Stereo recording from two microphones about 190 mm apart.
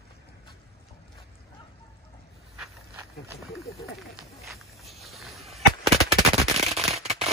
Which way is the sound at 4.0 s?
Centre (ahead or behind).